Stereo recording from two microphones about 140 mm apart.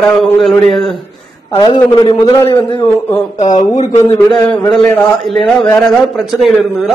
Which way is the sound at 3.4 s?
60° left (ahead or behind).